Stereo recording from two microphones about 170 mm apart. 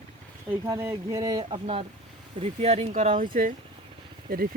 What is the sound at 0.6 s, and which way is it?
Speech, 20° right (ahead or behind).